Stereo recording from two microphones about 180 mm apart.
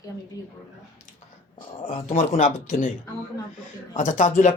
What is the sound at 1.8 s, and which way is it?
Speech, 40° left (ahead or behind).